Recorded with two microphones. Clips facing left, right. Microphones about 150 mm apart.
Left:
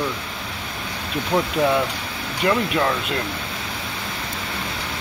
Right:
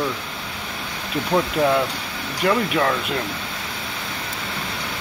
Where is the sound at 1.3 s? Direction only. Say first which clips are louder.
Right 1 dB; centre (ahead or behind).